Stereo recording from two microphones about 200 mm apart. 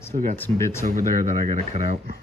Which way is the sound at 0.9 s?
40° right (ahead or behind).